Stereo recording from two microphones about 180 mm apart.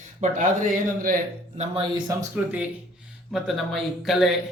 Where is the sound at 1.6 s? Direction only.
30° right (ahead or behind).